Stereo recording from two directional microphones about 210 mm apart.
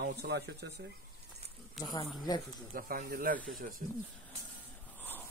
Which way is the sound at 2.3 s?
20° left (ahead or behind).